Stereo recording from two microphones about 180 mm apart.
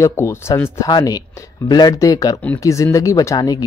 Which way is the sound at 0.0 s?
15° left (ahead or behind).